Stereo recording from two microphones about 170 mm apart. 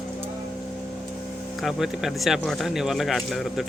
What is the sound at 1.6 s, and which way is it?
Speech, centre (ahead or behind).